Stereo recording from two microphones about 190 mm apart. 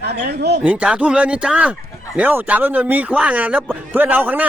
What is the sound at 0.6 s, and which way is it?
A man's voice, 5° right (ahead or behind).